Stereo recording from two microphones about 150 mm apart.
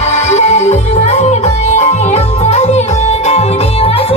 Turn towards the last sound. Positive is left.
turn(degrees=40)  # may be behind; listen again after turning